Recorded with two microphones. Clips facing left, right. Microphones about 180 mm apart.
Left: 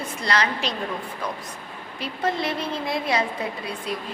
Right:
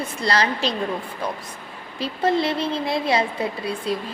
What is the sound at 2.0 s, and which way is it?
A woman's voice, 30° right (ahead or behind).